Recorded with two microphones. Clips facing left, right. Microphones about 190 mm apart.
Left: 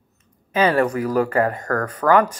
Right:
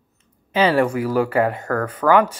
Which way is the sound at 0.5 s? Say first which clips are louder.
Right 1 dB; 10° right (ahead or behind).